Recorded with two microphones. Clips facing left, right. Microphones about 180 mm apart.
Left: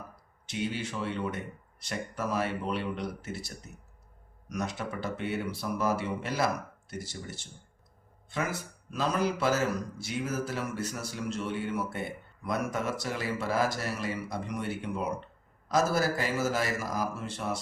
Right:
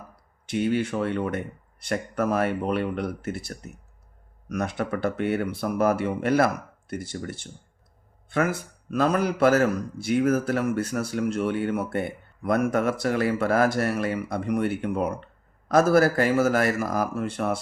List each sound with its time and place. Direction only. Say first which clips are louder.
0.4 s a man's voice: right 9 dB; 55° right (ahead or behind)